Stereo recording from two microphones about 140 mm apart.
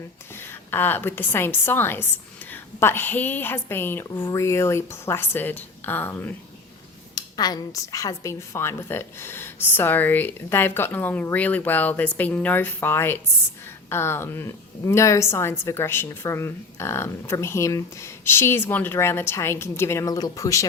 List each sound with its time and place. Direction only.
0.3 s a woman's voice: 15° left (ahead or behind)
7.2 s a woman's voice: 30° left (ahead or behind)